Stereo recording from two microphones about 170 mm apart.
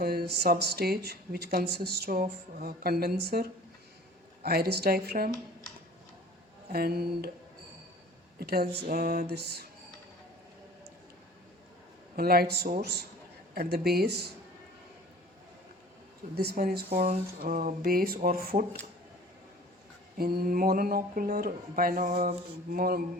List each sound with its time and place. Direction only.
0.0 s speech: 70° right (ahead or behind)
4.4 s speech: 65° right (ahead or behind)
6.7 s speech: 65° right (ahead or behind)
8.4 s speech: 65° right (ahead or behind)
8.9 s a sound: 45° right (ahead or behind)
9.2 s speech: 75° right (ahead or behind)
12.1 s speech: 60° right (ahead or behind)
16.3 s speech: 70° right (ahead or behind)
20.1 s speech: 60° right (ahead or behind)